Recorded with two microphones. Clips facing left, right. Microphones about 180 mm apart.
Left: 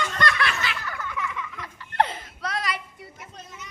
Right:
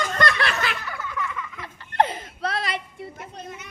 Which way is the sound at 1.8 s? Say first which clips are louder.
Right 2 dB; 20° right (ahead or behind).